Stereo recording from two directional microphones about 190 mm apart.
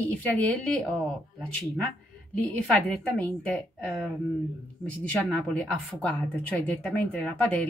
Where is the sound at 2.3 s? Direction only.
5° left (ahead or behind).